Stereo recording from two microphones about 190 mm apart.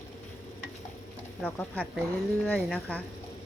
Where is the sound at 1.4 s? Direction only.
5° left (ahead or behind).